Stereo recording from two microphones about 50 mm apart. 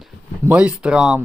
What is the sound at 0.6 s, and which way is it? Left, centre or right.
Speech, right.